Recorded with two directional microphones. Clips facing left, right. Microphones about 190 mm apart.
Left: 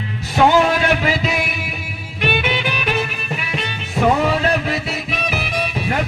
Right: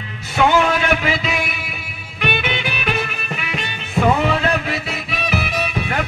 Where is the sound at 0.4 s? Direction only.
40° left (ahead or behind).